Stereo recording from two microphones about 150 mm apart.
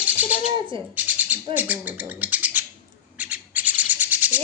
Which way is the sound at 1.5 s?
10° right (ahead or behind).